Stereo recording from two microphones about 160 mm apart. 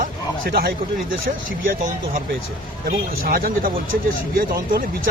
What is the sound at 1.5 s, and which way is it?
Speech, 60° right (ahead or behind).